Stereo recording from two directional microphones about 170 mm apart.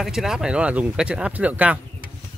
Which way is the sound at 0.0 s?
Centre (ahead or behind).